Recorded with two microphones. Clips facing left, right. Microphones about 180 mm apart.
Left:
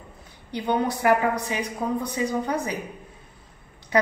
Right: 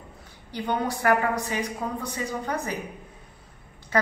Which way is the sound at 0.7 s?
15° left (ahead or behind).